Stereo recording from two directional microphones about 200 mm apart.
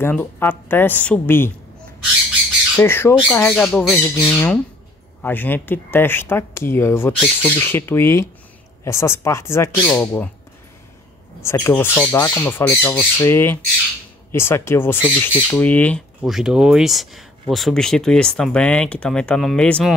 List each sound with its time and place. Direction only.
0.0 s speech: 10° left (ahead or behind)
2.7 s speech: 10° left (ahead or behind)
5.2 s speech: 10° left (ahead or behind)
11.4 s speech: 10° left (ahead or behind)